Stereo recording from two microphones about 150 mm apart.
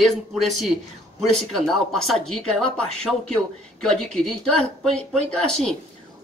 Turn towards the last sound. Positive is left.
turn(degrees=5)  # may be behind; listen again after turning